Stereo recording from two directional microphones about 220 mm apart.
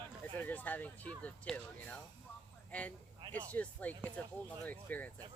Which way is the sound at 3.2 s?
20° right (ahead or behind).